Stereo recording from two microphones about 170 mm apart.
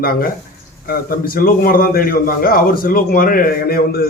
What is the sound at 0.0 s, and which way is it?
A man's voice, 60° left (ahead or behind).